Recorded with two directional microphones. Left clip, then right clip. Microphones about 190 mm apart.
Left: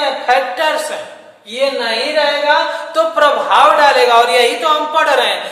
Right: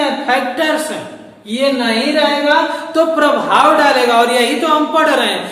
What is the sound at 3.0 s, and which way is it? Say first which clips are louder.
A man's voice: even; 20° left (ahead or behind).